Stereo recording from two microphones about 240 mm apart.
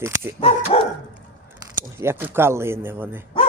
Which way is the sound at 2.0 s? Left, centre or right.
Centre.